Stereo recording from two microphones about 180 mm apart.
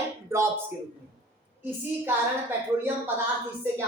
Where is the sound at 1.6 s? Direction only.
10° right (ahead or behind).